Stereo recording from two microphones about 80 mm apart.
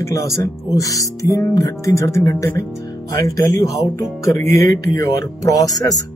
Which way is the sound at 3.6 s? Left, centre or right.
Left.